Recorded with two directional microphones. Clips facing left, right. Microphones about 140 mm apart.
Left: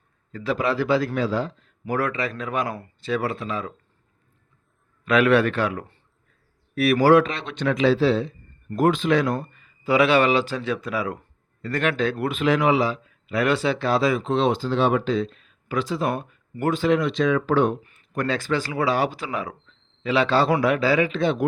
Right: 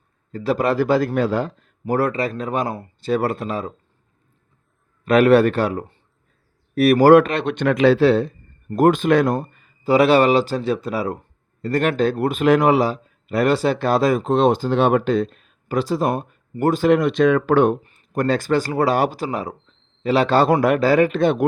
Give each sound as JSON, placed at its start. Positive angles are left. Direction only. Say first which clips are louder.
{"t": 0.3, "sound": "a man's voice", "louder": "right 4 dB", "side_deg": -40}
{"t": 1.8, "sound": "speech", "louder": "right 5 dB", "side_deg": -35}
{"t": 3.1, "sound": "speech", "louder": "right 5 dB", "side_deg": -45}
{"t": 5.0, "sound": "speech", "louder": "right 5 dB", "side_deg": -40}
{"t": 8.7, "sound": "speech", "louder": "right 5 dB", "side_deg": -50}
{"t": 9.8, "sound": "a man's voice", "louder": "right 4 dB", "side_deg": -35}
{"t": 17.8, "sound": "a man's voice", "louder": "right 5 dB", "side_deg": -35}